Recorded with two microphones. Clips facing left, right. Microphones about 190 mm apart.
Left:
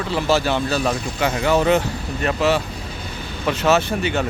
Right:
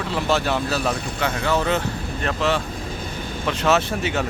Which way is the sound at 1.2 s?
15° left (ahead or behind).